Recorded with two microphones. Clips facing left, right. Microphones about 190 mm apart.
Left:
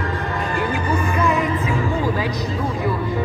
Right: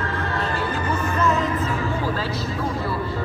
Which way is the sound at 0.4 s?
15° left (ahead or behind).